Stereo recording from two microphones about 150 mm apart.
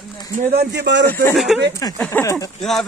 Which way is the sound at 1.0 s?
15° left (ahead or behind).